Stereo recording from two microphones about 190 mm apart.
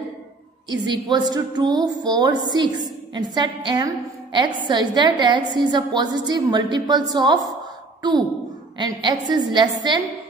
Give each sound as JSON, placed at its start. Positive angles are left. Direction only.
{"t": 0.7, "sound": "a woman's voice", "side_deg": -25}
{"t": 8.7, "sound": "a woman's voice", "side_deg": -20}